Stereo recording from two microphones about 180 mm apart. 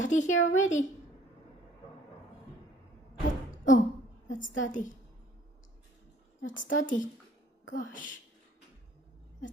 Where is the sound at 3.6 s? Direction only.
45° left (ahead or behind).